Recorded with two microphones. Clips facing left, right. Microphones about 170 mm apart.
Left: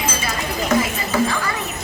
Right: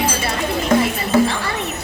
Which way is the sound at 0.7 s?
30° right (ahead or behind).